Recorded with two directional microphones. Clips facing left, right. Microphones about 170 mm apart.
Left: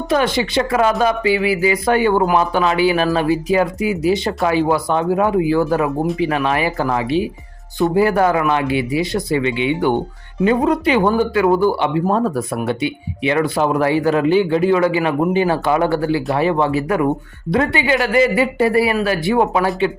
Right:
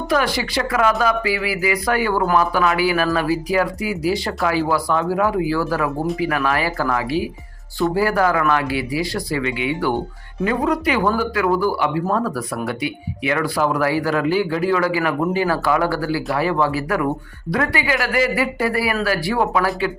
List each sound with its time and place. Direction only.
0.1 s speech: 25° left (ahead or behind)